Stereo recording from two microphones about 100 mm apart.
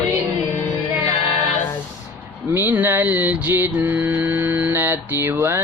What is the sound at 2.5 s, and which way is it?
Mantra, 20° right (ahead or behind).